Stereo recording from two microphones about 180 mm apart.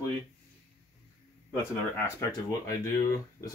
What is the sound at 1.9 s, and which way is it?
Speech, 20° left (ahead or behind).